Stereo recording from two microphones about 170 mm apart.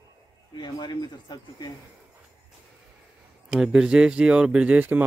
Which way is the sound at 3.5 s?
5° right (ahead or behind).